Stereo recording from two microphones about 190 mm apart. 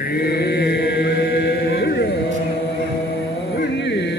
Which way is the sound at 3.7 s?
65° left (ahead or behind).